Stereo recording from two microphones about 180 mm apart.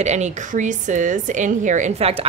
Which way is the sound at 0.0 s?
40° right (ahead or behind).